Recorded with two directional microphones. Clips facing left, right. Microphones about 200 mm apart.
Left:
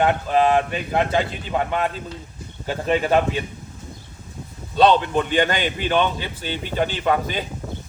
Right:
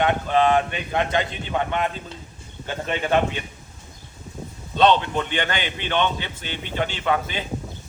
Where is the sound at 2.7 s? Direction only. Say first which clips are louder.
Left 5 dB; 35° left (ahead or behind).